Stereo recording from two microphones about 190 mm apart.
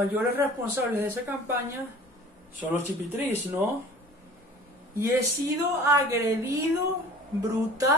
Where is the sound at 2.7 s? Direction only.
10° right (ahead or behind).